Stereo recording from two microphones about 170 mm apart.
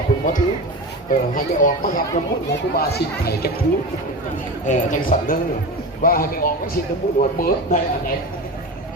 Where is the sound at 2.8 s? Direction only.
65° left (ahead or behind).